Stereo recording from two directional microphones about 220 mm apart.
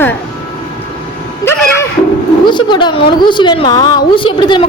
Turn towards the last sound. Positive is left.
turn(degrees=20)  # may be behind; listen again after turning